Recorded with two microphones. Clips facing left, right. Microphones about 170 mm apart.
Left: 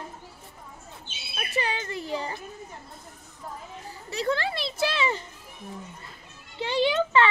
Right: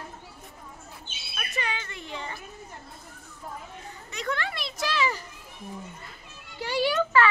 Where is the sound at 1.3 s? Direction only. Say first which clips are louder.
Left 4 dB; 35° left (ahead or behind).